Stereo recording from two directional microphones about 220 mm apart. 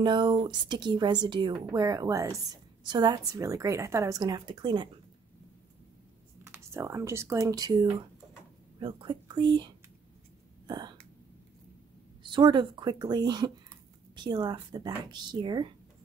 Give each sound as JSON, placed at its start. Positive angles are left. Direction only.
{"t": 0.0, "sound": "a woman's voice", "side_deg": -20}
{"t": 6.4, "sound": "speech", "side_deg": -10}
{"t": 10.7, "sound": "a sound", "side_deg": -20}
{"t": 12.2, "sound": "a woman's voice", "side_deg": -20}